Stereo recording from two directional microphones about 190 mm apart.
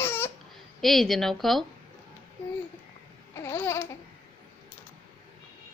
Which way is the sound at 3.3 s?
15° left (ahead or behind).